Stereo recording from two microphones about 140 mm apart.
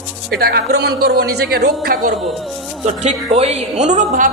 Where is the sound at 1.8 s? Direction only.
90° right.